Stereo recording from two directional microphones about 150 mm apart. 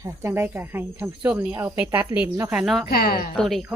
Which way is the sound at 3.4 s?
Centre (ahead or behind).